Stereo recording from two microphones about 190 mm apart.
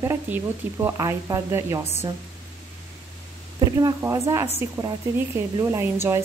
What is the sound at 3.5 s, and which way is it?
Speech, 20° right (ahead or behind).